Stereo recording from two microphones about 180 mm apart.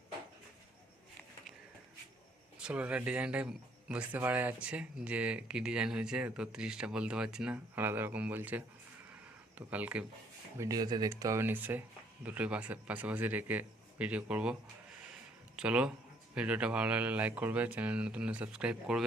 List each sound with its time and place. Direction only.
2.6 s speech: 5° right (ahead or behind)
10.6 s speech: 20° right (ahead or behind)
15.5 s speech: 5° right (ahead or behind)